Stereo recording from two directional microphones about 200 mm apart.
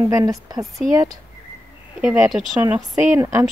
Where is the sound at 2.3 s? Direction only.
5° right (ahead or behind).